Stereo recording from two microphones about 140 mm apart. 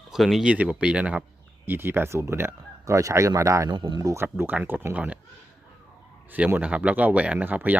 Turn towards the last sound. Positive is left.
turn(degrees=-10)  # may be behind; listen again after turning